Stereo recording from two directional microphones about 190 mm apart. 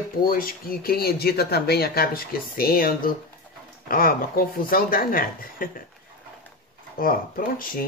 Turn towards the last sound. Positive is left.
turn(degrees=50)  # may be behind; listen again after turning